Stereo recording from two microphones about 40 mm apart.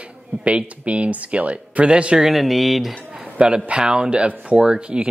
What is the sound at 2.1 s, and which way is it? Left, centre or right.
Speech, centre.